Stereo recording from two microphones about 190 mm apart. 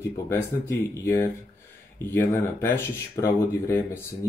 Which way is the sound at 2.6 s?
15° left (ahead or behind).